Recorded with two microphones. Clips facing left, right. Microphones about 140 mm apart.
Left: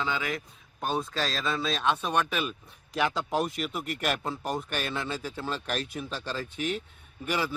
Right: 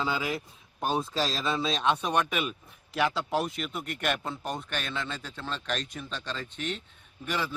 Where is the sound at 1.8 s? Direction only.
15° right (ahead or behind).